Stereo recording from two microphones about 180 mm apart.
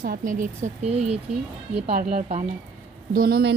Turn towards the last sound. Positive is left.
turn(degrees=-60)  # may be behind; listen again after turning